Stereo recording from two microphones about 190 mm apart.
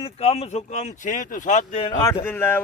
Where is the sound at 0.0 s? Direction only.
30° left (ahead or behind).